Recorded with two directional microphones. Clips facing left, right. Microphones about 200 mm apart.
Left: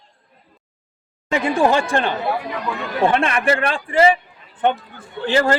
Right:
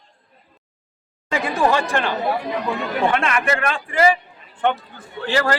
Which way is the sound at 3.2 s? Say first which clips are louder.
Left 2 dB; 30° left (ahead or behind).